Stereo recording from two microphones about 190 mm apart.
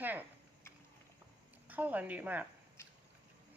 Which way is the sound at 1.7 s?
10° right (ahead or behind).